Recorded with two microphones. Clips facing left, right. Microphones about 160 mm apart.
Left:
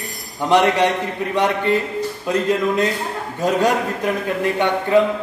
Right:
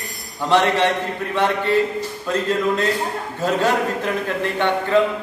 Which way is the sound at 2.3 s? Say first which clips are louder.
Left 1 dB; 15° left (ahead or behind).